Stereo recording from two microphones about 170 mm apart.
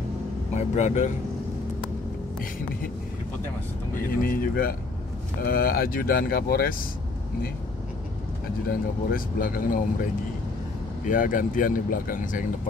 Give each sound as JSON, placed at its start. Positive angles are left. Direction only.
{"t": 0.6, "sound": "speech", "side_deg": 45}
{"t": 4.1, "sound": "speech", "side_deg": 60}
{"t": 8.6, "sound": "speech", "side_deg": 55}
{"t": 11.1, "sound": "speech", "side_deg": 50}